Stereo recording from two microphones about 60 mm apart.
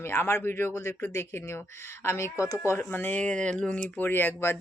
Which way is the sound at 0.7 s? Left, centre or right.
Left.